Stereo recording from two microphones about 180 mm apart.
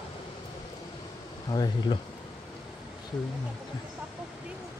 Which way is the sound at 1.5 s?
25° left (ahead or behind).